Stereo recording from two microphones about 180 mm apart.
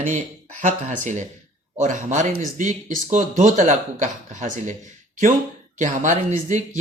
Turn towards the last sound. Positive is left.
turn(degrees=-45)  # may be behind; listen again after turning